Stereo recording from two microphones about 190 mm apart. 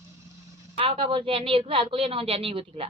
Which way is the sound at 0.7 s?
30° right (ahead or behind).